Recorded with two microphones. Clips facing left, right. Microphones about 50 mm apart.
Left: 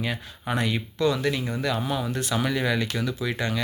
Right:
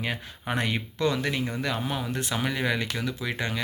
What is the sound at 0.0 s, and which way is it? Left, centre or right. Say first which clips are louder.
Speech: left 1 dB; right.